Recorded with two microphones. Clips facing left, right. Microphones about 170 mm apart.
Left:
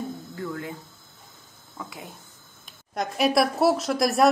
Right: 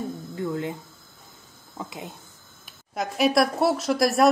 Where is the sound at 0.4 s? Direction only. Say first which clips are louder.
Right 5 dB; 20° right (ahead or behind).